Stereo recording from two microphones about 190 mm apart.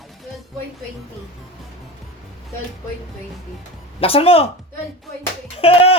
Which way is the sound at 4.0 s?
30° left (ahead or behind).